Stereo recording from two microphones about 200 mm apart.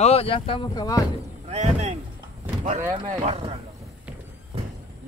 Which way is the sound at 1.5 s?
35° right (ahead or behind).